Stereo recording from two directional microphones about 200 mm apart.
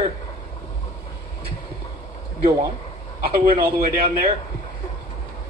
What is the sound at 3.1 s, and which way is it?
Speech, 50° right (ahead or behind).